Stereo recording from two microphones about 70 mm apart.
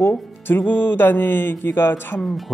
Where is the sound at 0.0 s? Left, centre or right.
Left.